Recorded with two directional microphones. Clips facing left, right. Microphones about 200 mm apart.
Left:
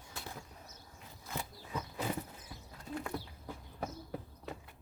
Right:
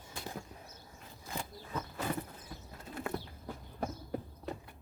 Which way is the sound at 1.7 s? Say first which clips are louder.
Right 1 dB; 10° left (ahead or behind).